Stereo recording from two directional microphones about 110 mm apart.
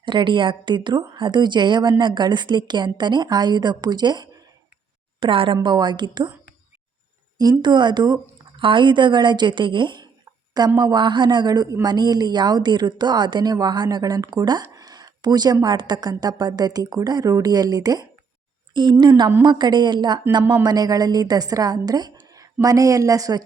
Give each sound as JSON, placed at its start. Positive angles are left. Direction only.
{"t": 0.0, "sound": "a woman's voice", "side_deg": -45}
{"t": 5.2, "sound": "a woman's voice", "side_deg": -50}
{"t": 7.6, "sound": "a woman's voice", "side_deg": -45}
{"t": 20.4, "sound": "speech", "side_deg": -15}
{"t": 20.7, "sound": "a woman's voice", "side_deg": -35}